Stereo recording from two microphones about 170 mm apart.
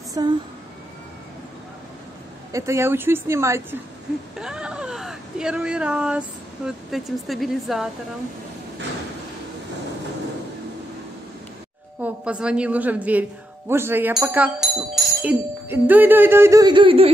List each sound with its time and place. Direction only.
0.2 s speech: 20° right (ahead or behind)
2.5 s speech: 15° right (ahead or behind)
4.4 s speech: 5° right (ahead or behind)
12.0 s speech: 5° right (ahead or behind); by 17.1 s 30° right (ahead or behind)